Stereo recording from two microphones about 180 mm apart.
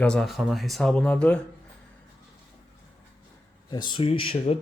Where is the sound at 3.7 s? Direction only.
25° left (ahead or behind).